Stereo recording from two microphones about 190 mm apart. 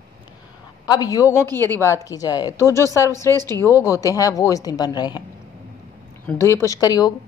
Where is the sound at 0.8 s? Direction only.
20° left (ahead or behind).